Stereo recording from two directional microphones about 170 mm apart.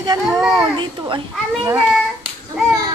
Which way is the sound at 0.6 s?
30° right (ahead or behind).